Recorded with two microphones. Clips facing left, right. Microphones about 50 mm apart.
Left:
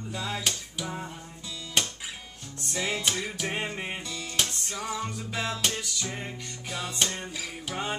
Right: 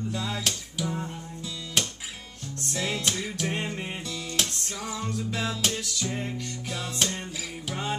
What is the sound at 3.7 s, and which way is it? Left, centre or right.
Music, centre.